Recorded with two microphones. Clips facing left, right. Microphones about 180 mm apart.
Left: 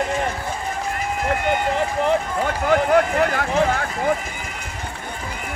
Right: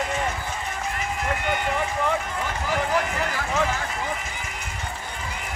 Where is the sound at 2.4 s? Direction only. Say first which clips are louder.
Left 8 dB; 60° left (ahead or behind).